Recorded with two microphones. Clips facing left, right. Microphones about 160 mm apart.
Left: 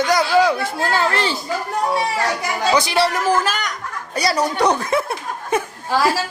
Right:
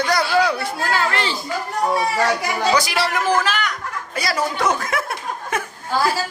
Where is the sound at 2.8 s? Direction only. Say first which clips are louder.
Left 3 dB; 30° left (ahead or behind).